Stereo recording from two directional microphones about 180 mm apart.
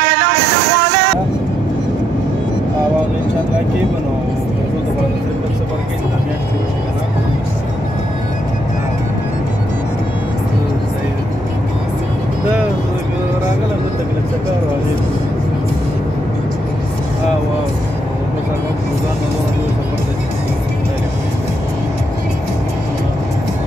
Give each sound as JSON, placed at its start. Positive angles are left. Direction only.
{"t": 0.0, "sound": "vehicle", "side_deg": -65}